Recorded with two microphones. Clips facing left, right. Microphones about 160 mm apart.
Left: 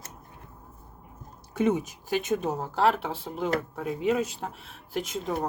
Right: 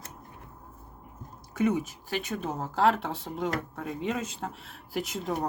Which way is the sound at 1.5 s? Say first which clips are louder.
Left 2 dB; 25° left (ahead or behind).